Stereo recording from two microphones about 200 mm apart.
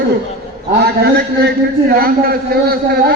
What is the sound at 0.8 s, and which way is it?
Speech, 55° right (ahead or behind).